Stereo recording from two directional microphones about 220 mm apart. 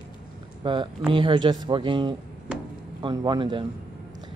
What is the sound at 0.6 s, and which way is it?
Speech, 25° right (ahead or behind).